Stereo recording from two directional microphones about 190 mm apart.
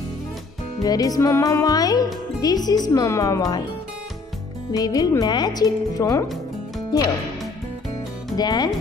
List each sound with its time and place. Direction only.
0.8 s speech: 20° left (ahead or behind)
4.7 s speech: 20° left (ahead or behind)
8.4 s speech: 20° left (ahead or behind)